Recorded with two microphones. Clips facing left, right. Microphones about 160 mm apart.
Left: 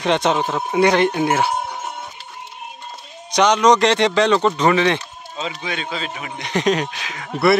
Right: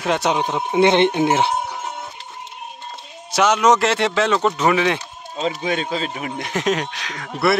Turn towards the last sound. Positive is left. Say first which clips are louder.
# left 3 dB
turn(degrees=0)  # may be behind; listen again after turning